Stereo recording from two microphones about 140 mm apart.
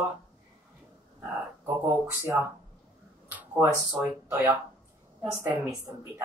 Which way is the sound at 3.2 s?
10° right (ahead or behind).